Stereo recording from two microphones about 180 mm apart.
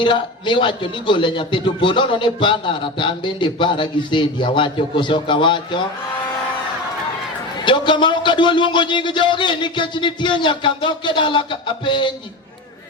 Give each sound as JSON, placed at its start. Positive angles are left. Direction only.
{"t": 0.0, "sound": "a man's voice", "side_deg": 25}
{"t": 7.6, "sound": "a man's voice", "side_deg": 25}